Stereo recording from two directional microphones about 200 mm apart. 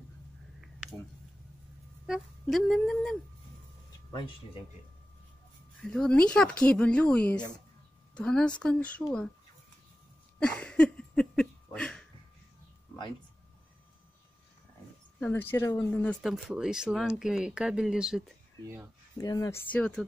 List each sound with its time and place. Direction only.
2.4 s speech: centre (ahead or behind)
5.9 s speech: 5° left (ahead or behind)
10.4 s a sound: 5° left (ahead or behind)
15.1 s speech: 10° left (ahead or behind)
19.1 s speech: 20° left (ahead or behind)
19.7 s speech: 5° left (ahead or behind)